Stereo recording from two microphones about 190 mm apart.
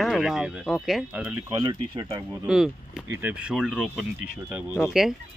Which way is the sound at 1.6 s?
25° right (ahead or behind).